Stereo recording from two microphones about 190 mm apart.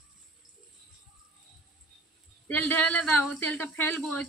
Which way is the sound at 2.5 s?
10° left (ahead or behind).